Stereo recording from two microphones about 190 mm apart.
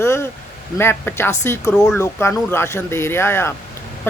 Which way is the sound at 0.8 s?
10° left (ahead or behind).